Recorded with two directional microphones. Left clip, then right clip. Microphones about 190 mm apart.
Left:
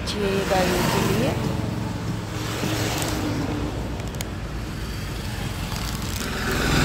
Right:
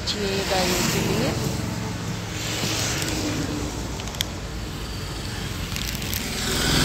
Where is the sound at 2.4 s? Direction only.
50° left (ahead or behind).